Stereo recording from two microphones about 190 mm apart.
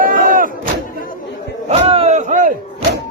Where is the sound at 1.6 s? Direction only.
35° right (ahead or behind).